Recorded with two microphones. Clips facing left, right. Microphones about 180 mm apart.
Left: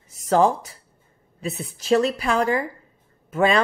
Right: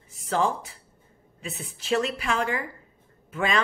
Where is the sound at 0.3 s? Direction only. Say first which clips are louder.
Left 7 dB; 40° left (ahead or behind).